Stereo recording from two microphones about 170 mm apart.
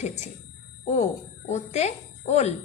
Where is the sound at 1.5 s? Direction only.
40° left (ahead or behind).